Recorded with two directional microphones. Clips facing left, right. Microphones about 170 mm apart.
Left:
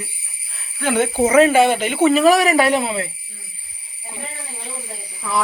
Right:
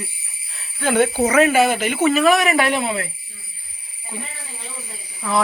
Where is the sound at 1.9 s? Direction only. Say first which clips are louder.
Left 3 dB; 30° left (ahead or behind).